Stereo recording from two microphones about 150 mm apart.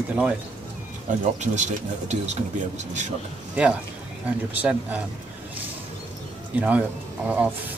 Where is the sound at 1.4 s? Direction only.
50° right (ahead or behind).